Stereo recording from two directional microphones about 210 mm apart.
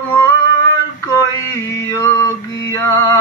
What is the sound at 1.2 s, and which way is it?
Mantra, 15° left (ahead or behind).